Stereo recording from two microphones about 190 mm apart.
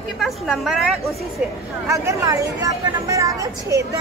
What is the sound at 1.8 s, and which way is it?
A man's voice, 15° right (ahead or behind).